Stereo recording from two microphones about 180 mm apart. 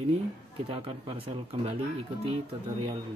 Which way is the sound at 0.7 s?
30° right (ahead or behind).